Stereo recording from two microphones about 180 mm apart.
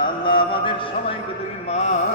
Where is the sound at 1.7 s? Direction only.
35° left (ahead or behind).